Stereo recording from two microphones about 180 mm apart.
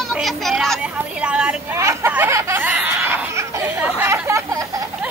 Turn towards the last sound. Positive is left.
turn(degrees=-20)  # may be behind; listen again after turning